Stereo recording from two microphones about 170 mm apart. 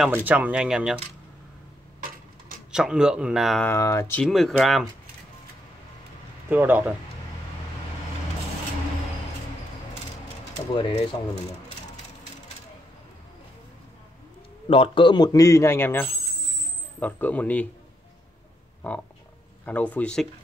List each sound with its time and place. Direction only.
0.1 s speech: 10° right (ahead or behind)
2.7 s speech: 5° right (ahead or behind)
3.6 s speech: 15° left (ahead or behind)
4.2 s speech: centre (ahead or behind)
6.5 s speech: 10° right (ahead or behind)
10.7 s a man's voice: 25° left (ahead or behind)
14.7 s a man's voice: 30° left (ahead or behind); by 17.6 s 10° left (ahead or behind)
19.6 s speech: 10° left (ahead or behind)